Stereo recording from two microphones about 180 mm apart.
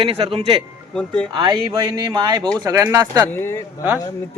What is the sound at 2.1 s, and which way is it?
Speech, 20° right (ahead or behind).